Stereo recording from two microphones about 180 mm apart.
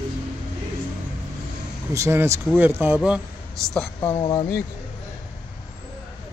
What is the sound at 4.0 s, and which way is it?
Speech, 25° left (ahead or behind).